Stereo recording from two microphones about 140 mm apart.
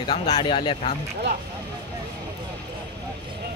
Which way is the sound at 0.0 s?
30° left (ahead or behind).